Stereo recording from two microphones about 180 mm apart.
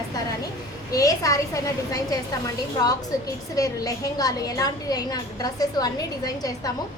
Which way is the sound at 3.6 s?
20° left (ahead or behind).